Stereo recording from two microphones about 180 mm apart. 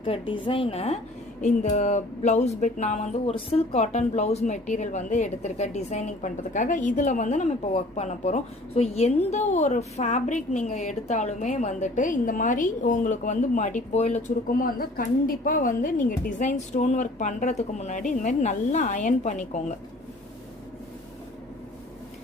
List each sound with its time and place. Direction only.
0.0 s a woman's voice: 30° left (ahead or behind)